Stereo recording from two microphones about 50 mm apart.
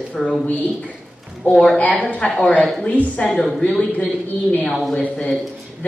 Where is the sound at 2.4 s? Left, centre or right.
Left.